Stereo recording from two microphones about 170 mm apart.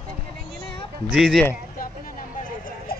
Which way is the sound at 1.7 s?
55° left (ahead or behind).